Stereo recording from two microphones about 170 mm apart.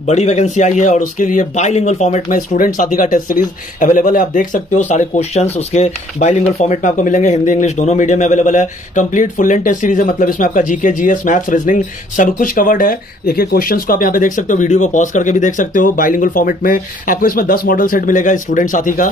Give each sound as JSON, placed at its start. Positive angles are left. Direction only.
{"t": 0.0, "sound": "a man's voice", "side_deg": 40}
{"t": 2.2, "sound": "a man's voice", "side_deg": 55}